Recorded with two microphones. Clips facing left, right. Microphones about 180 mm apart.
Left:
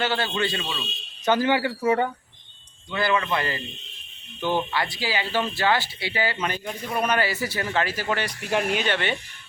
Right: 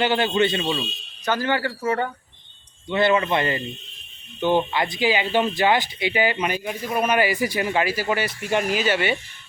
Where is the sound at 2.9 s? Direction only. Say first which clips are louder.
Right 5 dB; 25° right (ahead or behind).